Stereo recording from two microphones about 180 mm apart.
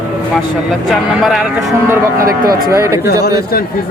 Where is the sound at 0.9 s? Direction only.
Centre (ahead or behind).